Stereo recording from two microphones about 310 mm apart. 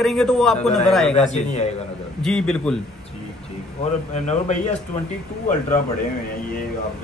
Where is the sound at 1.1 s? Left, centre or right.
Left.